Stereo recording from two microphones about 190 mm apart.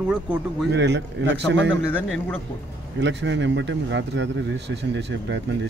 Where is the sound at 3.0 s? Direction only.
70° right (ahead or behind).